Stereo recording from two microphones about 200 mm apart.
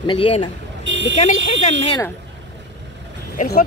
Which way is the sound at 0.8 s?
65° right (ahead or behind).